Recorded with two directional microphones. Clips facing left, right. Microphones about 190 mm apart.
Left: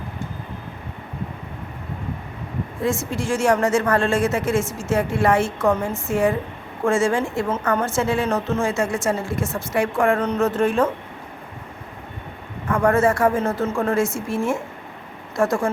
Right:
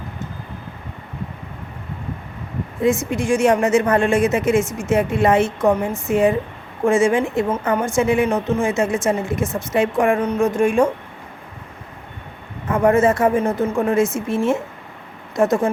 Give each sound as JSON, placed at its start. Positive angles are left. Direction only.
{"t": 2.8, "sound": "a woman's voice", "side_deg": -20}
{"t": 12.6, "sound": "a woman's voice", "side_deg": -20}